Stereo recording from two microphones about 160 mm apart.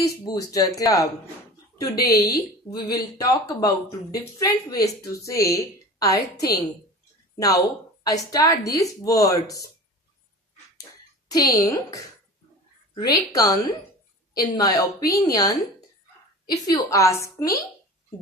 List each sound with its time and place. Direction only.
0.3 s speech: 20° left (ahead or behind)
10.8 s a sound: 20° left (ahead or behind)
12.9 s speech: 25° left (ahead or behind)